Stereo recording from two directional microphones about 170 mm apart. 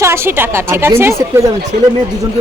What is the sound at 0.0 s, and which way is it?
A woman's voice, 15° right (ahead or behind).